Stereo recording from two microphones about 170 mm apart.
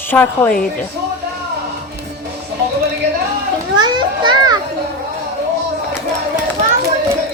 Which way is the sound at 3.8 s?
25° right (ahead or behind).